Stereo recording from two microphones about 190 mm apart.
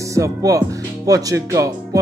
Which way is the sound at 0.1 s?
15° right (ahead or behind).